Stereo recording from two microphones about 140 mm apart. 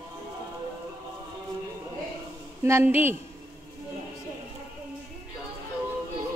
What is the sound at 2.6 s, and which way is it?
Speech, 15° right (ahead or behind).